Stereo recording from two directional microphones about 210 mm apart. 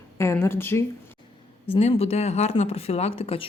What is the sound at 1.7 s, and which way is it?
Speech, 30° left (ahead or behind).